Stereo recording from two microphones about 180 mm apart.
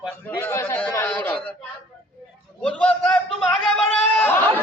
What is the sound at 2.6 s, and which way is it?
A man's voice, 5° left (ahead or behind).